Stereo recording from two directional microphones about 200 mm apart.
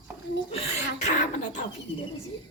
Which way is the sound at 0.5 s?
35° left (ahead or behind).